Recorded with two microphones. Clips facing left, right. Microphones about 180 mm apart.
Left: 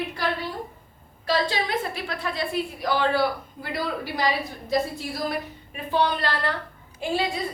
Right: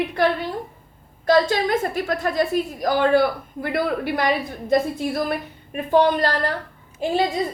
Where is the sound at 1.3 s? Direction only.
45° right (ahead or behind).